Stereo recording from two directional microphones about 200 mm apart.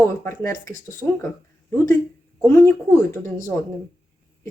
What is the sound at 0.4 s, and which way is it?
Speech, 15° left (ahead or behind).